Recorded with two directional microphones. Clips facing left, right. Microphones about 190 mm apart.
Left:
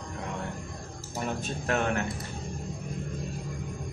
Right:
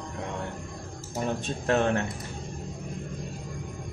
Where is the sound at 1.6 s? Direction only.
30° right (ahead or behind).